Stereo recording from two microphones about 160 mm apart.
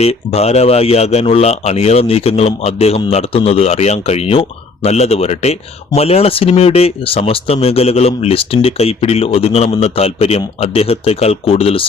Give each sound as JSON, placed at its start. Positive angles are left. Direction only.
{"t": 0.0, "sound": "speech", "side_deg": 40}